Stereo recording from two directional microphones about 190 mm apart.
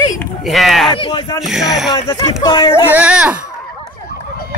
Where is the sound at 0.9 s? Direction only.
25° left (ahead or behind).